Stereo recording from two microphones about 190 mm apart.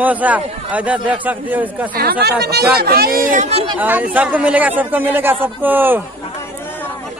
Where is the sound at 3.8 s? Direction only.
10° right (ahead or behind).